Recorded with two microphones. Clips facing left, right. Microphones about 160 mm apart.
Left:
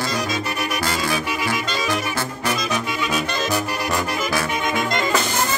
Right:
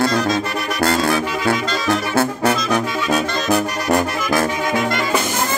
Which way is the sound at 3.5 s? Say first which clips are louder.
Right 6 dB; 45° right (ahead or behind).